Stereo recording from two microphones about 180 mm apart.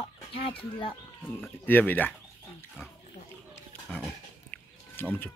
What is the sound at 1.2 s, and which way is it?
Speech, 10° left (ahead or behind).